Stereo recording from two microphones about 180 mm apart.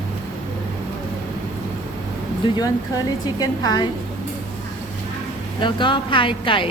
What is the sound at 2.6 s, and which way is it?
A woman's voice, 20° left (ahead or behind).